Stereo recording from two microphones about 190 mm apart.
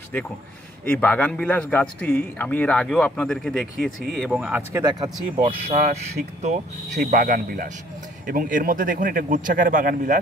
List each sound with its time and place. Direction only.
0.8 s a man's voice: 10° left (ahead or behind); by 5.1 s 15° right (ahead or behind)
5.4 s speech: 35° right (ahead or behind)
7.0 s speech: 45° right (ahead or behind)